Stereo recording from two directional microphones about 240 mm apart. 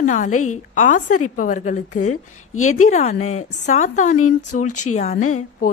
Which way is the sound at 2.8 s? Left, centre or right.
Left.